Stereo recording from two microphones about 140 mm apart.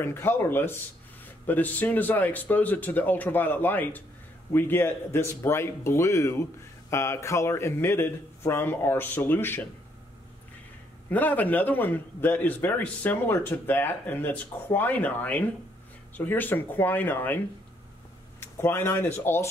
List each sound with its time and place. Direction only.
0.0 s a man's voice: 15° left (ahead or behind)
11.1 s a man's voice: 10° left (ahead or behind)
18.4 s speech: 15° left (ahead or behind)